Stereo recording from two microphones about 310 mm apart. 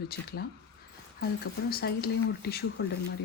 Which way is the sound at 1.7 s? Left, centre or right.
Left.